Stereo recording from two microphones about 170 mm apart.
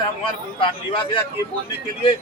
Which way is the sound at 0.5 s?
30° left (ahead or behind).